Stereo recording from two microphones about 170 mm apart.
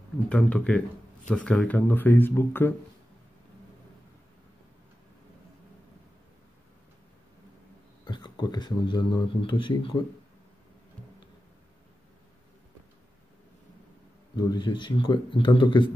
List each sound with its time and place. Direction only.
0.3 s speech: 5° left (ahead or behind)
8.0 s speech: 25° left (ahead or behind)
14.3 s a man's voice: 25° left (ahead or behind)